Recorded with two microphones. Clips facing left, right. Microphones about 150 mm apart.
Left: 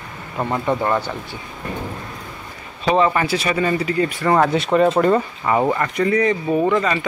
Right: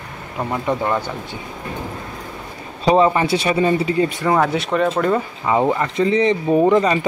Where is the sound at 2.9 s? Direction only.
20° right (ahead or behind).